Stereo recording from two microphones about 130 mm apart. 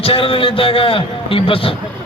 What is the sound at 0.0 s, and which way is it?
A man's voice, 45° left (ahead or behind).